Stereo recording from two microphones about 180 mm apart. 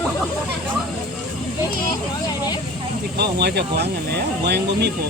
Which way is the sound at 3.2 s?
65° right (ahead or behind).